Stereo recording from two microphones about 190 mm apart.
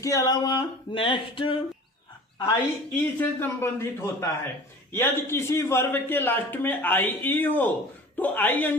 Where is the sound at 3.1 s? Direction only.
10° left (ahead or behind).